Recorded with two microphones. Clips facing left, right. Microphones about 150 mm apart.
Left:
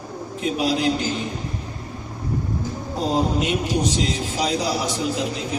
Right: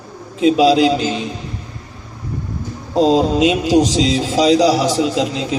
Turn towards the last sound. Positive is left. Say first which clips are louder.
# right 6 dB
turn(degrees=-90)